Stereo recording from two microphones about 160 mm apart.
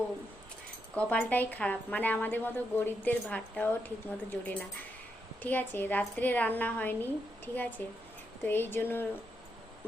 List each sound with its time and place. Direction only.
0.9 s a woman's voice: 10° left (ahead or behind)